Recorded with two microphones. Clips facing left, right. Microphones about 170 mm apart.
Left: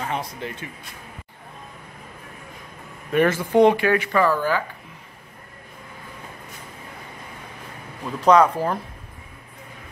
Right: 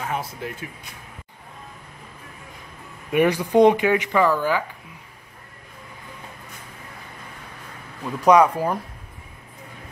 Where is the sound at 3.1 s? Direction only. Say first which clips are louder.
Even; 15° right (ahead or behind).